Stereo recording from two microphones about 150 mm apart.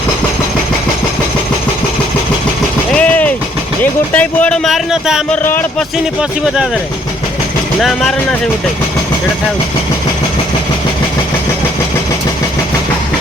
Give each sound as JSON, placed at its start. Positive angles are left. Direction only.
{"t": 2.9, "sound": "vehicle", "side_deg": 10}
{"t": 4.1, "sound": "speech", "side_deg": 10}
{"t": 5.3, "sound": "speech", "side_deg": 15}
{"t": 7.8, "sound": "speech", "side_deg": 0}